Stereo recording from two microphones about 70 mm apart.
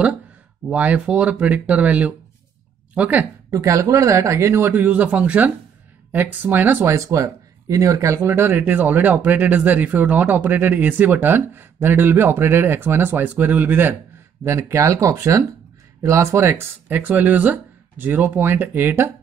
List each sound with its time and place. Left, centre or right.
0.7 s speech: centre
3.4 s speech: right
6.8 s speech: right
14.4 s speech: right